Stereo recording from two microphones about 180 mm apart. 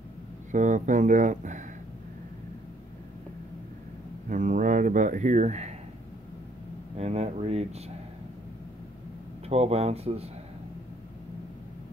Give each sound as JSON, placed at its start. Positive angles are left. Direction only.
{"t": 0.5, "sound": "speech", "side_deg": -45}
{"t": 4.3, "sound": "speech", "side_deg": -45}
{"t": 7.0, "sound": "speech", "side_deg": -35}
{"t": 9.5, "sound": "speech", "side_deg": -35}